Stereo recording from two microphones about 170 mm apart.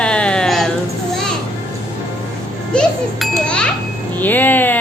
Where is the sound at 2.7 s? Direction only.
5° left (ahead or behind).